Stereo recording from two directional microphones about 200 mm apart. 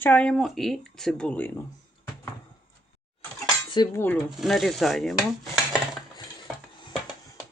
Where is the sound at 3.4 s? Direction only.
20° left (ahead or behind).